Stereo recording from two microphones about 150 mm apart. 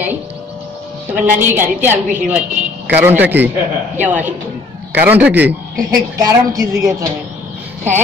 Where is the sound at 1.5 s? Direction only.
15° right (ahead or behind).